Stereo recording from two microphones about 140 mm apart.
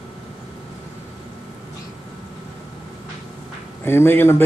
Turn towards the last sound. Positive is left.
turn(degrees=15)  # may be behind; listen again after turning